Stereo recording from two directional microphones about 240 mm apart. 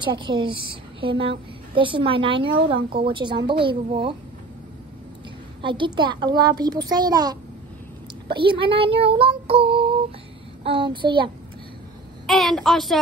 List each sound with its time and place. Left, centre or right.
0.0 s speech: centre
5.6 s a woman's voice: centre
12.3 s a woman's voice: centre